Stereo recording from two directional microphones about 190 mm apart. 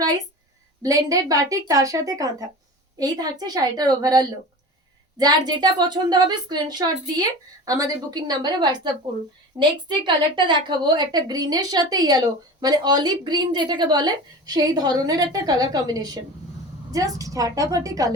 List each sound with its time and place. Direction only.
0.8 s a woman's voice: 20° right (ahead or behind)